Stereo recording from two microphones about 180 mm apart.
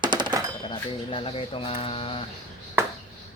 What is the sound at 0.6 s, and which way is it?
Speech, 30° left (ahead or behind).